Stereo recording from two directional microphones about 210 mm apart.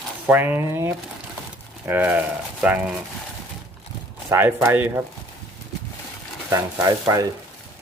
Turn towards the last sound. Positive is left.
turn(degrees=-15)  # may be behind; listen again after turning